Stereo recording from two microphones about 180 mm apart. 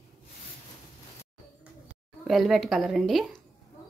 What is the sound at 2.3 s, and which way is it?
Speech, centre (ahead or behind).